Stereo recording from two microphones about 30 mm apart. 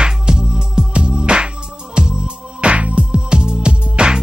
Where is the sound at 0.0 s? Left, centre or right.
Right.